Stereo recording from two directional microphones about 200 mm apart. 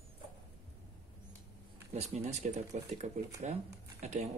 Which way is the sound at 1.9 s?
35° right (ahead or behind).